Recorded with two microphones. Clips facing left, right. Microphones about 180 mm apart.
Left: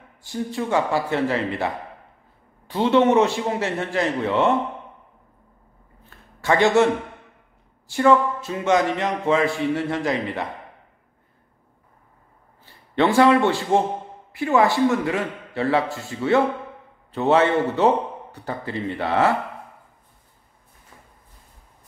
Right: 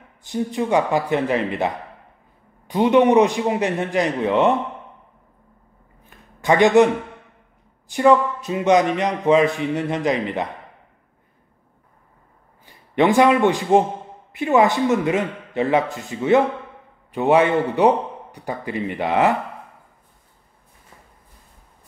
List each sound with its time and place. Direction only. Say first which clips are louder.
0.2 s a man's voice: right 4 dB; 20° right (ahead or behind)
2.7 s a man's voice: right 3 dB; 15° right (ahead or behind)
6.0 s a sound: right 3 dB; 15° right (ahead or behind)
7.9 s a man's voice: right 2 dB; 15° right (ahead or behind)
12.6 s a man's voice: right 3 dB; 15° right (ahead or behind)